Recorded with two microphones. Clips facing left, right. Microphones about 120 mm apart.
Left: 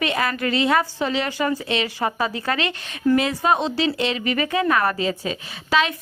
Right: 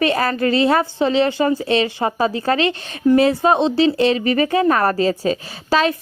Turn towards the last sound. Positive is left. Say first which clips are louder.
# right 4 dB
turn(degrees=-35)  # may be behind; listen again after turning